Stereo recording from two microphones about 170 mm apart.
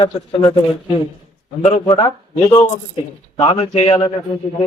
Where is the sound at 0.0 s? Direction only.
30° left (ahead or behind).